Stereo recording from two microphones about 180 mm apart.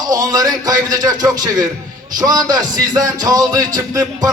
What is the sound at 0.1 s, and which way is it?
Speech, 20° right (ahead or behind).